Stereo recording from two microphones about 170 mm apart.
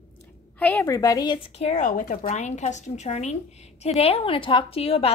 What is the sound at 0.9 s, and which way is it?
Speech, 20° left (ahead or behind).